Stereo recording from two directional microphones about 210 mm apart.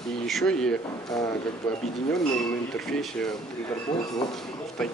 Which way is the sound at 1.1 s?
15° left (ahead or behind).